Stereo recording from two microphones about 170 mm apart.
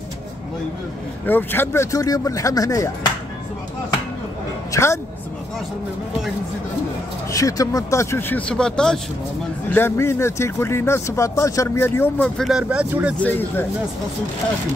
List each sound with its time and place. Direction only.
1.2 s speech: 10° left (ahead or behind)
4.7 s speech: 15° left (ahead or behind)
7.2 s speech: 20° left (ahead or behind); by 13.1 s 10° right (ahead or behind)
13.2 s speech: 10° left (ahead or behind)